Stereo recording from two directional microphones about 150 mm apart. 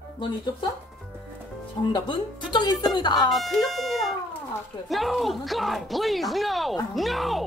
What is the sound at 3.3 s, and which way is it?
Music, centre (ahead or behind).